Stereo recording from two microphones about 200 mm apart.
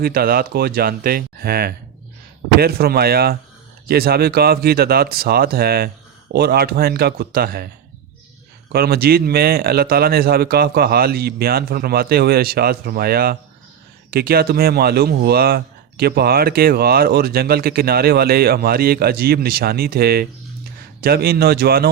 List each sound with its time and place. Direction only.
0.0 s speech: 50° right (ahead or behind)
8.7 s speech: 50° right (ahead or behind)